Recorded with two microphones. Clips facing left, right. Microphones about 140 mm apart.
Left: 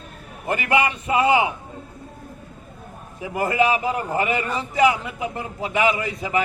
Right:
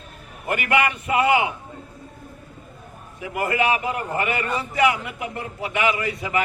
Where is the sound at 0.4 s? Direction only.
30° left (ahead or behind).